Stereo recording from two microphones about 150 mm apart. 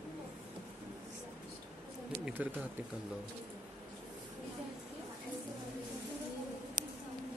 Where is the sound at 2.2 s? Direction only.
10° right (ahead or behind).